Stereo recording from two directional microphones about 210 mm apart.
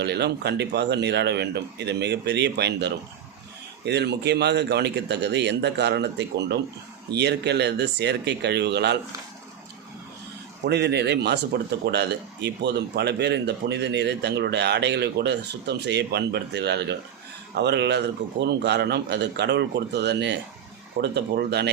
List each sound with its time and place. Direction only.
0.0 s speech: 55° right (ahead or behind)
10.6 s speech: 55° right (ahead or behind)